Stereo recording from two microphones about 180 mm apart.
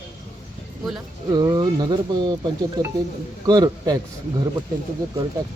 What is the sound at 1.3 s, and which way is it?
Speech, 20° right (ahead or behind).